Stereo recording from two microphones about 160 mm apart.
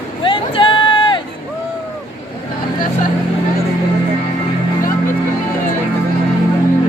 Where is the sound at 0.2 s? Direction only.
30° left (ahead or behind).